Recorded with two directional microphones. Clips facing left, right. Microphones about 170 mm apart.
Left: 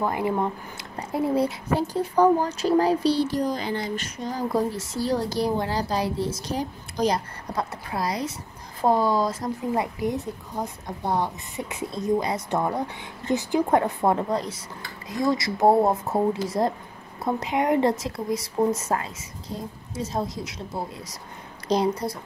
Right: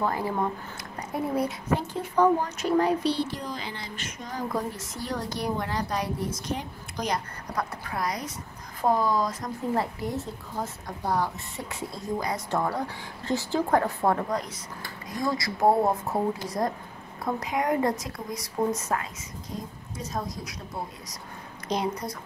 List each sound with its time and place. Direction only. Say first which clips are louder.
0.0 s speech: left 3 dB; 15° left (ahead or behind)
0.9 s a woman's voice: left 4 dB; 30° left (ahead or behind)
9.8 s a woman's voice: left 3 dB; 20° left (ahead or behind)